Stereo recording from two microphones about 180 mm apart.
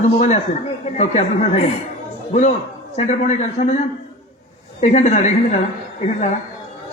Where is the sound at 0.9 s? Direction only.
40° left (ahead or behind).